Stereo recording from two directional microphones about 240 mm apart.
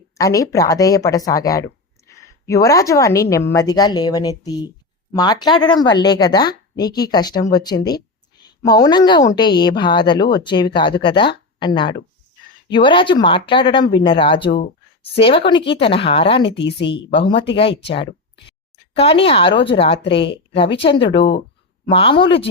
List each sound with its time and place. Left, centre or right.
0.2 s speech: centre
16.6 s speech: left
16.8 s speech: left
17.9 s a sound: left
18.9 s speech: left